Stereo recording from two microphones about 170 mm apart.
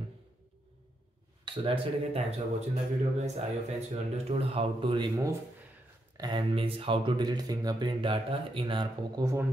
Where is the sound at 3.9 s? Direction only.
35° right (ahead or behind).